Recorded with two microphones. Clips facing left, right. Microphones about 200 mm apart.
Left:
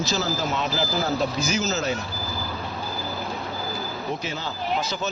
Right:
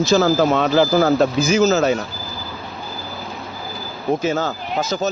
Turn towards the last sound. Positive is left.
turn(degrees=-45)  # may be behind; listen again after turning